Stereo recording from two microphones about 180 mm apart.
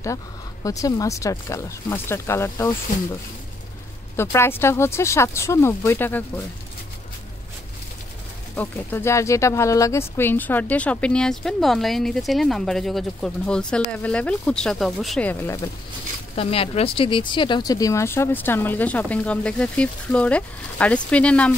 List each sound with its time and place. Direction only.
0.7 s speech: 20° left (ahead or behind)
4.2 s speech: 15° left (ahead or behind)
8.5 s speech: 15° left (ahead or behind)
16.3 s speech: 30° left (ahead or behind); by 21.5 s 5° left (ahead or behind)